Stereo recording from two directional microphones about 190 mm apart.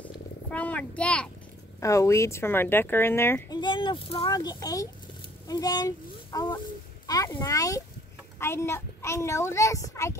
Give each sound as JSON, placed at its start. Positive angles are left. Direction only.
{"t": 0.0, "sound": "a sound", "side_deg": 10}
{"t": 1.8, "sound": "speech", "side_deg": 15}
{"t": 3.6, "sound": "speech", "side_deg": 25}